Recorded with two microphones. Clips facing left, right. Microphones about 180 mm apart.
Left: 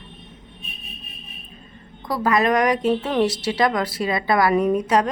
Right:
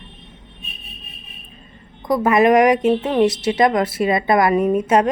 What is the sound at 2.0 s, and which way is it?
Speech, 20° right (ahead or behind).